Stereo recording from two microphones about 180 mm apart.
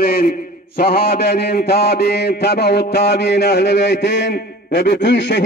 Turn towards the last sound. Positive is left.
turn(degrees=75)  # may be behind; listen again after turning